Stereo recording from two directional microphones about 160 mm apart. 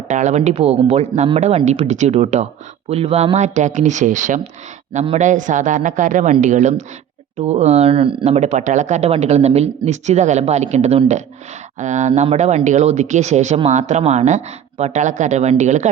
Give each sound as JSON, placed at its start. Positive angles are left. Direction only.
{"t": 0.1, "sound": "speech", "side_deg": -50}